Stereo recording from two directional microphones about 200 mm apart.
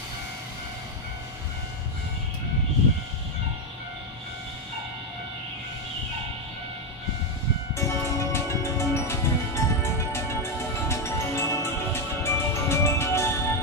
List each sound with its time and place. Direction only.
7.7 s music: 15° left (ahead or behind)